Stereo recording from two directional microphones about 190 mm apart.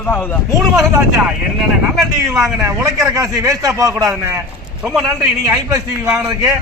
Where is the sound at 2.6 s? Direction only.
15° right (ahead or behind).